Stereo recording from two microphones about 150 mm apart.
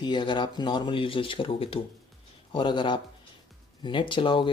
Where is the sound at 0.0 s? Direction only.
30° left (ahead or behind).